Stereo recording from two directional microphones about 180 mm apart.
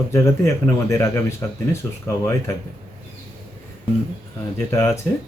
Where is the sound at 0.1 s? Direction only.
15° left (ahead or behind).